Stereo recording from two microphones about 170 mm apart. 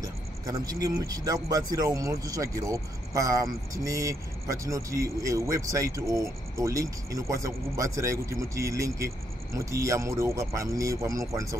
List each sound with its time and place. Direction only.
0.0 s speech: 20° right (ahead or behind)